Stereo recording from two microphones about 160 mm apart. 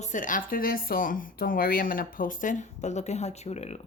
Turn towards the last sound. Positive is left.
turn(degrees=45)  # may be behind; listen again after turning